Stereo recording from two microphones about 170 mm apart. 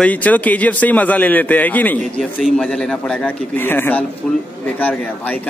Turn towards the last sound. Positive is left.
turn(degrees=10)  # may be behind; listen again after turning